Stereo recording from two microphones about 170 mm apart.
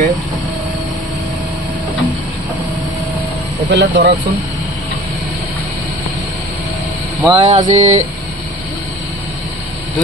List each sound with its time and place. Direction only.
3.7 s speech: 90° right
7.2 s music: 25° right (ahead or behind)
7.4 s mantra: 45° right (ahead or behind)